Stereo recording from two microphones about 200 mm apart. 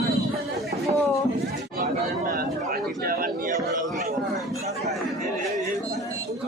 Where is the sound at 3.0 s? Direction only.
45° right (ahead or behind).